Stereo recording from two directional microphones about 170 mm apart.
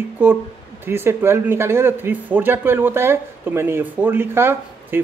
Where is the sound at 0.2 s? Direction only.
10° right (ahead or behind).